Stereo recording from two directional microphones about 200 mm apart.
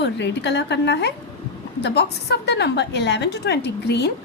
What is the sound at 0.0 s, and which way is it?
A woman's voice, 60° left (ahead or behind).